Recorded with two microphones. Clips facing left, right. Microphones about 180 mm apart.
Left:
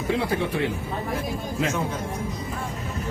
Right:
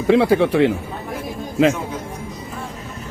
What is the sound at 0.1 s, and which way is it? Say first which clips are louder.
Speech: right 11 dB; 90° right.